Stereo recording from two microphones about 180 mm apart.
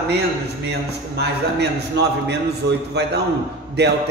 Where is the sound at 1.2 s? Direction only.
70° right (ahead or behind).